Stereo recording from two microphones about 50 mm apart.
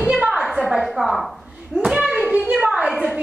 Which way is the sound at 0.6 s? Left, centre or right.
Centre.